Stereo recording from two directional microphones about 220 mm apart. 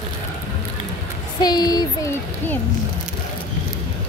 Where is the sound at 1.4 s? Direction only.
20° left (ahead or behind).